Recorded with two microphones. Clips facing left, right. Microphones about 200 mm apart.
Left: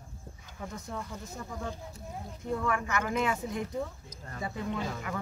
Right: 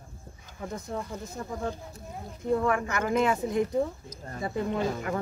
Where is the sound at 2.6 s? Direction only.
40° right (ahead or behind).